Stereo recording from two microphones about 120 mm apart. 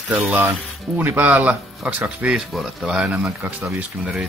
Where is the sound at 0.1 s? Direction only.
15° right (ahead or behind).